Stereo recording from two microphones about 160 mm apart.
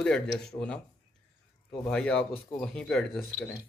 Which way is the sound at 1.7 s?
10° left (ahead or behind).